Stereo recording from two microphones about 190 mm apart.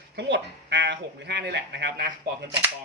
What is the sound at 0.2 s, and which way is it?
Speech, 65° right (ahead or behind).